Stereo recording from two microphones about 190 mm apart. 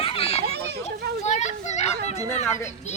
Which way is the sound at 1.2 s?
35° left (ahead or behind).